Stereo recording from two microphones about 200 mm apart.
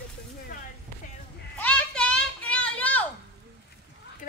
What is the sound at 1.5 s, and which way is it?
Children playing, 5° left (ahead or behind).